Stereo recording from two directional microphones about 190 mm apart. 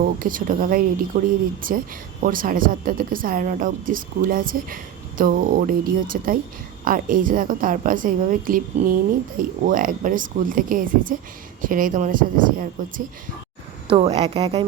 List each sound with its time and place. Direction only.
0.0 s a woman's voice: 45° right (ahead or behind)
13.8 s a woman's voice: 25° right (ahead or behind)